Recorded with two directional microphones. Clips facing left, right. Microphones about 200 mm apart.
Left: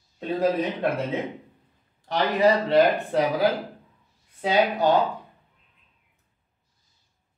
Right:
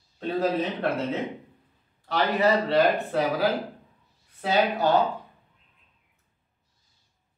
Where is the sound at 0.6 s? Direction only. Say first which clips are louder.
Left 1 dB; 15° left (ahead or behind).